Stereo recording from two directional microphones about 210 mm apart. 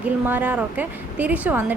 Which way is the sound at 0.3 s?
10° right (ahead or behind).